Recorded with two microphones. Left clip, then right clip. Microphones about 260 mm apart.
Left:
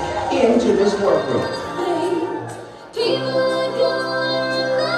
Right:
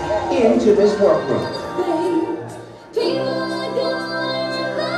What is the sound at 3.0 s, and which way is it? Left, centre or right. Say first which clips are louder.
Music: left 1 dB; centre.